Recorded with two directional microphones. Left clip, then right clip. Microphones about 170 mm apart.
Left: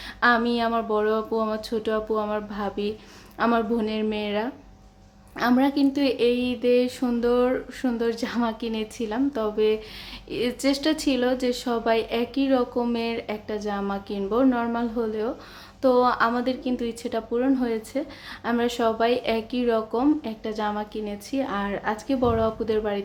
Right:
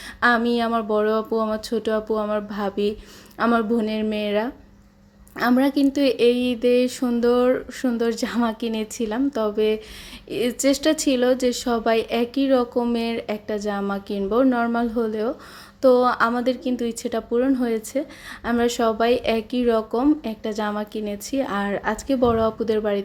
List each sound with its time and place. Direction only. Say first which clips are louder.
0.2 s speech: right 2 dB; 25° right (ahead or behind)